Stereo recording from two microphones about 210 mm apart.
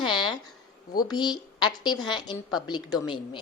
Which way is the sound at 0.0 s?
20° left (ahead or behind).